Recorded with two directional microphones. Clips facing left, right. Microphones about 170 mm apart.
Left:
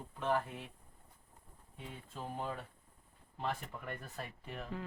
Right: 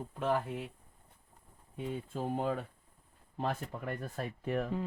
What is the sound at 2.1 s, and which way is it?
Speech, 50° right (ahead or behind).